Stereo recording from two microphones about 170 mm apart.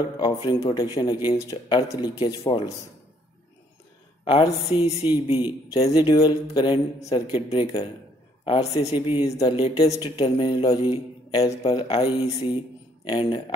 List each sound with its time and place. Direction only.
0.2 s a man's voice: 25° left (ahead or behind)
2.2 s a woman's voice: 35° left (ahead or behind)
4.2 s a woman's voice: 30° left (ahead or behind)
8.5 s a woman's voice: 35° left (ahead or behind)